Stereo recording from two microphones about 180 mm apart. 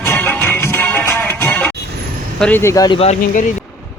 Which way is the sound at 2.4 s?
10° left (ahead or behind).